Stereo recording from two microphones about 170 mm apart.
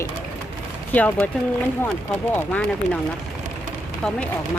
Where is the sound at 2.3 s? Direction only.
5° left (ahead or behind).